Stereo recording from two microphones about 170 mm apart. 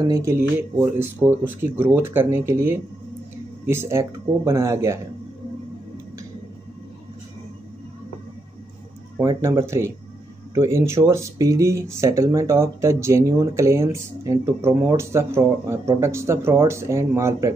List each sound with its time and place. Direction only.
0.1 s speech: 15° right (ahead or behind)
9.2 s speech: 20° right (ahead or behind)